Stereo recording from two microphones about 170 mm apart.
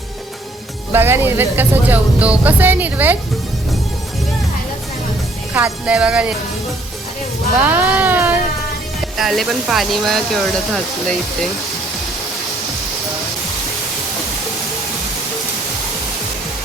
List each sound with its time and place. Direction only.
0.9 s speech: 15° right (ahead or behind)
5.5 s speech: 5° right (ahead or behind)
7.6 s speech: 10° right (ahead or behind)
9.1 s speech: centre (ahead or behind)